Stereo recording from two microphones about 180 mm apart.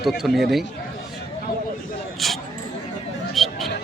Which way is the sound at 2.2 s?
Centre (ahead or behind).